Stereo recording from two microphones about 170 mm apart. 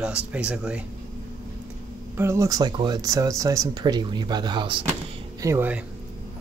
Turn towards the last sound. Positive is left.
turn(degrees=-15)  # may be behind; listen again after turning